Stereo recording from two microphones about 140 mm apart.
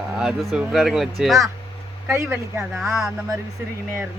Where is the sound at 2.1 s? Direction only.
15° right (ahead or behind).